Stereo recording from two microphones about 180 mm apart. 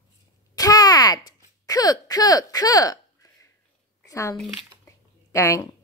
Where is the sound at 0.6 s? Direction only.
20° left (ahead or behind).